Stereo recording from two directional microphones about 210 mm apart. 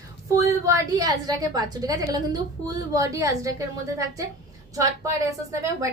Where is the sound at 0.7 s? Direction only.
15° right (ahead or behind).